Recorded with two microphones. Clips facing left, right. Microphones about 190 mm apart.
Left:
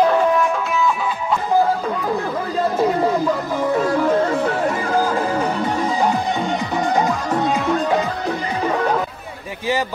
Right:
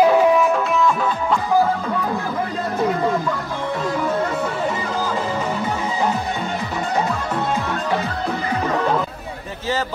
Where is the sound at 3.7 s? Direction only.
10° left (ahead or behind).